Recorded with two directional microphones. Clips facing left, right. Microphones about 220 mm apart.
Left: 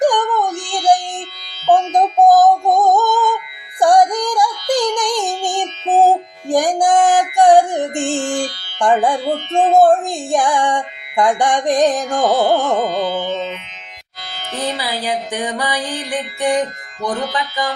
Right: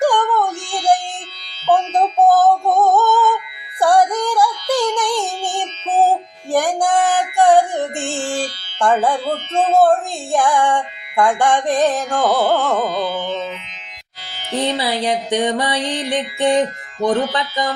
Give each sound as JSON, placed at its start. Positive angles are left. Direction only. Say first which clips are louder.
{"t": 0.0, "sound": "a sound", "louder": "left 1 dB", "side_deg": 15}
{"t": 0.9, "sound": "music", "louder": "left 2 dB", "side_deg": 15}
{"t": 1.6, "sound": "synthetic singing", "louder": "left 2 dB", "side_deg": 15}
{"t": 3.8, "sound": "child singing", "louder": "left 2 dB", "side_deg": 15}
{"t": 6.5, "sound": "music", "louder": "left 2 dB", "side_deg": 15}
{"t": 14.8, "sound": "music", "louder": "right 2 dB", "side_deg": -25}